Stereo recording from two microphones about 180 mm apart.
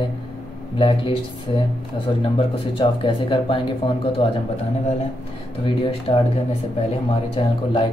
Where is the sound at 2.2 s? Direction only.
30° left (ahead or behind).